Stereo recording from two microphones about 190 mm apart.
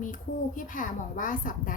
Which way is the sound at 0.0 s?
45° left (ahead or behind).